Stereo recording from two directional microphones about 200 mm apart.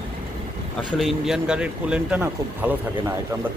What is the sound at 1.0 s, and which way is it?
Speech, centre (ahead or behind).